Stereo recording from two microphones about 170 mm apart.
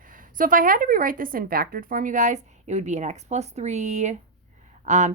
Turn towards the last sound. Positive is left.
turn(degrees=-45)  # may be behind; listen again after turning